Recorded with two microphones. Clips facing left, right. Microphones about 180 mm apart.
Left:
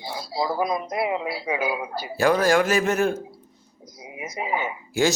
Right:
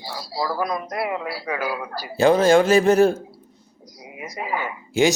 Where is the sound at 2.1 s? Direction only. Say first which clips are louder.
Right 4 dB; 25° right (ahead or behind).